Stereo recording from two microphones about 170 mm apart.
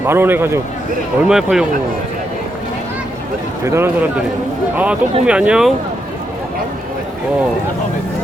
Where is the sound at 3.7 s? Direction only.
15° right (ahead or behind).